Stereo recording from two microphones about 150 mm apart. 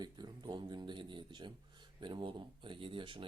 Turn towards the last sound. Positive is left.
turn(degrees=-35)  # may be behind; listen again after turning